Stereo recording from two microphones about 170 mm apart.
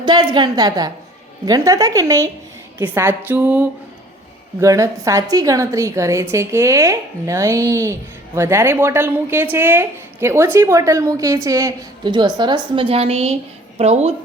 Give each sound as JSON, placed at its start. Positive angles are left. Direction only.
{"t": 0.0, "sound": "a woman's voice", "side_deg": -25}